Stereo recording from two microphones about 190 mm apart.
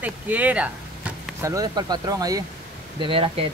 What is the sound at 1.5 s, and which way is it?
Speech, 20° right (ahead or behind).